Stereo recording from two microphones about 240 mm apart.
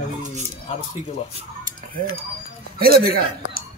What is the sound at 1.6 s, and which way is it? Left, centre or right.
Chicken, right.